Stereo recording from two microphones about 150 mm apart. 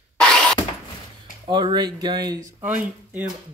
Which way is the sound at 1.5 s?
30° right (ahead or behind).